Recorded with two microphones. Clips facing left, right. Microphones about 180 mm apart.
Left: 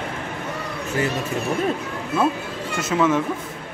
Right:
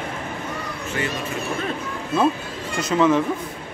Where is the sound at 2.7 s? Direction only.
5° left (ahead or behind).